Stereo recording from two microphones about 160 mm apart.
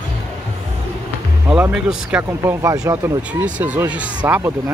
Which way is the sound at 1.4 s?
10° right (ahead or behind).